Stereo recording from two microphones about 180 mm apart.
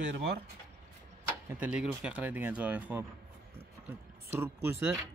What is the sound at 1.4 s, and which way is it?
Speech, 10° right (ahead or behind).